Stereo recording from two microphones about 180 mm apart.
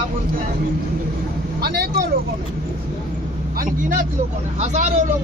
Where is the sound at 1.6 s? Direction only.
60° right (ahead or behind).